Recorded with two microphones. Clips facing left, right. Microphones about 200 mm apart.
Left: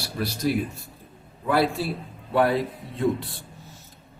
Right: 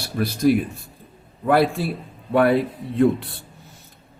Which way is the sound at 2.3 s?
60° right (ahead or behind).